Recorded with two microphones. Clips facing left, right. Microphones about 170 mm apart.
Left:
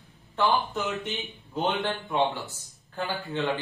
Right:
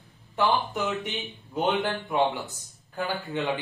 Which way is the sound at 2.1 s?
15° right (ahead or behind).